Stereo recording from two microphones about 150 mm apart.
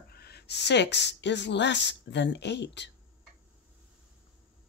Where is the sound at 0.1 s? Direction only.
90° left.